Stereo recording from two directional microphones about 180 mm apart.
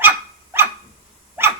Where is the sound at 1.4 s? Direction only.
10° right (ahead or behind).